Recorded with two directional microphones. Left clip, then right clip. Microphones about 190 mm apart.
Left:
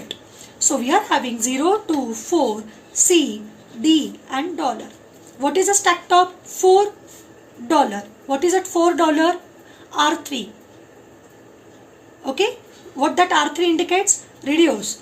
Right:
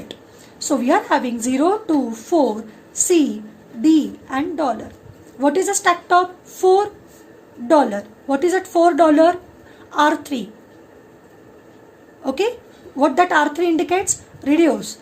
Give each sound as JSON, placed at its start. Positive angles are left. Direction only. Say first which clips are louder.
{"t": 0.6, "sound": "a woman's voice", "louder": "right 1 dB", "side_deg": -50}
{"t": 12.2, "sound": "a woman's voice", "louder": "even", "side_deg": -50}